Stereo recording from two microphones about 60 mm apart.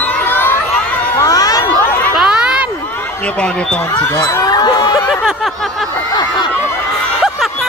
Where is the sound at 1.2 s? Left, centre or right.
Left.